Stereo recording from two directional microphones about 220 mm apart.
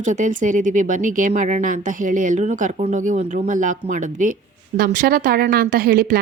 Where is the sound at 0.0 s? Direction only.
35° right (ahead or behind).